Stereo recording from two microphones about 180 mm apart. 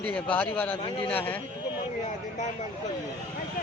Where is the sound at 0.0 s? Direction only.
5° left (ahead or behind).